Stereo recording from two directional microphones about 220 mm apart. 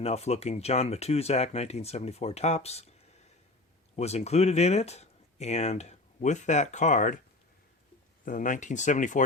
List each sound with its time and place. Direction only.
0.0 s speech: 30° left (ahead or behind)
3.9 s speech: 30° left (ahead or behind)
8.2 s speech: 35° left (ahead or behind)